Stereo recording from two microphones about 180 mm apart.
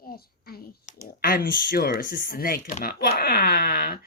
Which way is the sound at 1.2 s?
50° left (ahead or behind).